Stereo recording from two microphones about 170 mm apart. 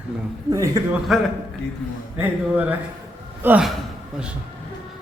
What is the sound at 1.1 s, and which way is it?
Speech, centre (ahead or behind).